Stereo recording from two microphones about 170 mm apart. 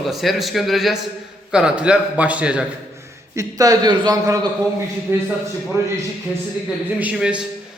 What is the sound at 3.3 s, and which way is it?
A man's voice, 20° right (ahead or behind).